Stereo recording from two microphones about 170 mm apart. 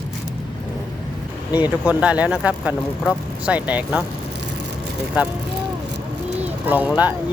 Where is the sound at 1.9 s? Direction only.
10° right (ahead or behind).